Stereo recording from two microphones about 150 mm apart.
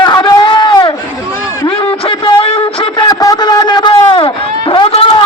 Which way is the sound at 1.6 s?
35° left (ahead or behind).